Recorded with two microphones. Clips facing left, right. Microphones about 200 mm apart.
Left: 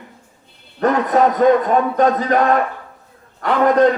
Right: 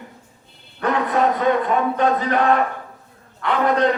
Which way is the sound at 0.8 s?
40° left (ahead or behind).